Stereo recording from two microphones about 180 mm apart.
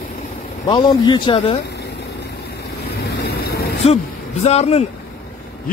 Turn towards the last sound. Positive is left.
turn(degrees=35)  # may be behind; listen again after turning